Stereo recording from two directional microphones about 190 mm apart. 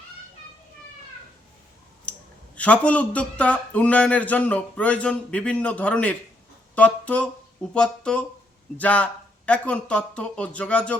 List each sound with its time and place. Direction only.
2.6 s speech: 5° left (ahead or behind)